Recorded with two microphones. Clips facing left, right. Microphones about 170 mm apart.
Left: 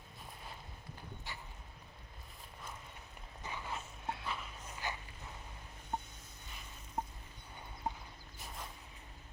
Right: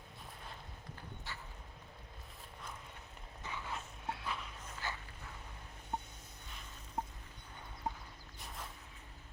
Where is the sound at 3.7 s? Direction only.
Centre (ahead or behind).